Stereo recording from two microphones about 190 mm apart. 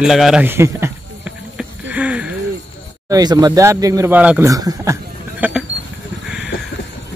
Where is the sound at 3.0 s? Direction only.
20° right (ahead or behind).